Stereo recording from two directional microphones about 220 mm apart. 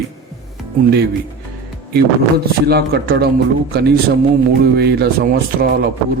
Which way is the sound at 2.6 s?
45° right (ahead or behind).